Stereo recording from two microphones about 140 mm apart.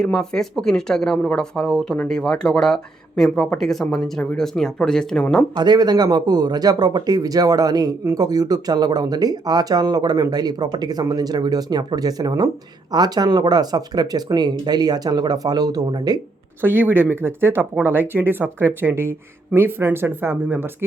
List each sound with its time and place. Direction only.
0.0 s speech: 5° left (ahead or behind)
5.5 s speech: 30° right (ahead or behind)
16.6 s speech: 15° right (ahead or behind)